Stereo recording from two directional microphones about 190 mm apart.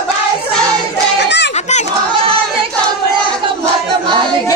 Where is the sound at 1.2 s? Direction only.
65° left (ahead or behind).